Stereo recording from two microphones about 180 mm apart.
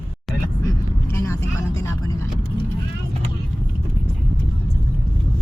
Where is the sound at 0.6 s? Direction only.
15° left (ahead or behind).